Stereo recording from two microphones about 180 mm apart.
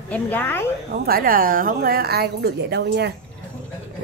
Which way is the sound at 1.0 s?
55° right (ahead or behind).